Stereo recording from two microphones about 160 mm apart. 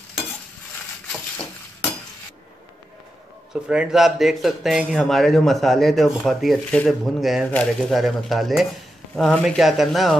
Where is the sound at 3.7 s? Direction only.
5° right (ahead or behind).